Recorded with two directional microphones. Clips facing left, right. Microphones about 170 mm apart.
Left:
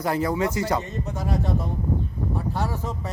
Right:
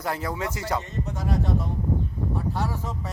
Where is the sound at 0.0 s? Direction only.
Centre (ahead or behind).